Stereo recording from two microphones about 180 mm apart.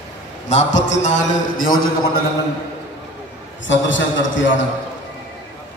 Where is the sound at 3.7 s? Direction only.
90° left.